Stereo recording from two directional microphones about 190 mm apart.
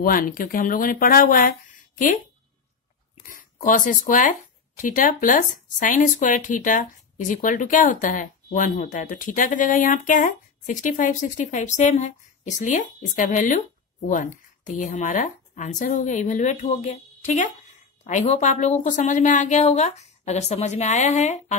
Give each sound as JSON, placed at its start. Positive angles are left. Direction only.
{"t": 0.0, "sound": "speech", "side_deg": 45}
{"t": 3.3, "sound": "speech", "side_deg": 40}